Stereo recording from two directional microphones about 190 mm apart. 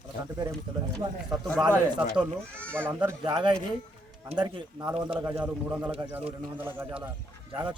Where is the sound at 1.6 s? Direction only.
20° right (ahead or behind).